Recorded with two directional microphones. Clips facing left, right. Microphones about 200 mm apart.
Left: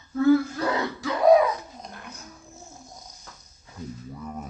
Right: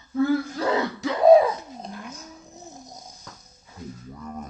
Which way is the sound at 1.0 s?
25° right (ahead or behind).